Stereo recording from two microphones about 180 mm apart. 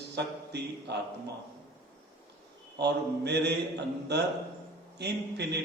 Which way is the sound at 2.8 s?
65° right (ahead or behind).